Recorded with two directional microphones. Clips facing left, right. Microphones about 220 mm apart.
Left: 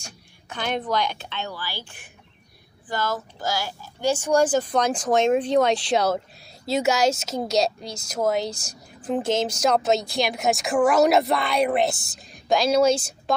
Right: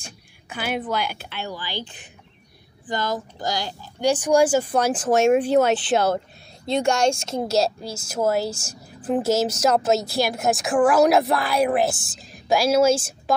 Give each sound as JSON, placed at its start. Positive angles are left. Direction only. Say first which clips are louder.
{"t": 0.0, "sound": "speech", "louder": "right 1 dB", "side_deg": -10}